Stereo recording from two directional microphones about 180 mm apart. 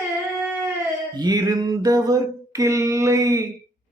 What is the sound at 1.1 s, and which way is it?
Music, 20° right (ahead or behind).